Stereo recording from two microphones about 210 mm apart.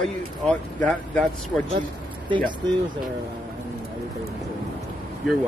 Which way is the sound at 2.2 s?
25° right (ahead or behind).